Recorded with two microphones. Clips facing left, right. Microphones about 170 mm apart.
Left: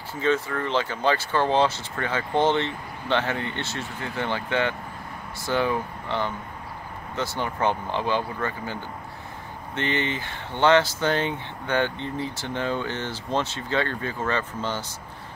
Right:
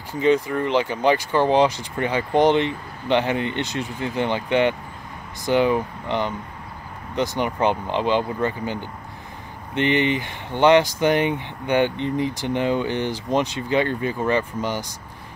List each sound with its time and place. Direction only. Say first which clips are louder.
0.1 s speech: right 5 dB; 15° right (ahead or behind)
9.8 s speech: right 7 dB; 15° right (ahead or behind)